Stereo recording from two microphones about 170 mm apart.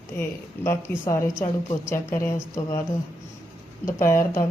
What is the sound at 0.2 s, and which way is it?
A woman's voice, 15° left (ahead or behind).